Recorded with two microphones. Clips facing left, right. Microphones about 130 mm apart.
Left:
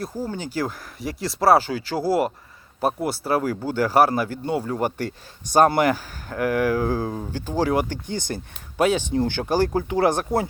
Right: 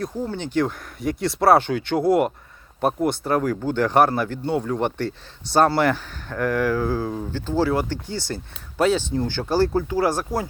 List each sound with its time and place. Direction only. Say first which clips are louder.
0.0 s speech: right 2 dB; 5° left (ahead or behind)